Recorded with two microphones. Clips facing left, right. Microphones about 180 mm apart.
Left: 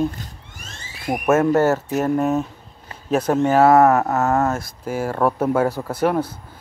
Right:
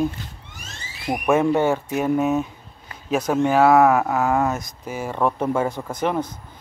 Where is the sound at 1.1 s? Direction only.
5° left (ahead or behind).